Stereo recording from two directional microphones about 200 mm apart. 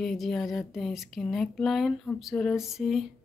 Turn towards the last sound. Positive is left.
turn(degrees=0)  # may be behind; listen again after turning